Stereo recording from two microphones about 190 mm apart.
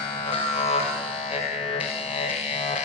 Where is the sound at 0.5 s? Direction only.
35° left (ahead or behind).